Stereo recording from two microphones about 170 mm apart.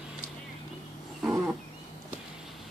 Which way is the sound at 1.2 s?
10° right (ahead or behind).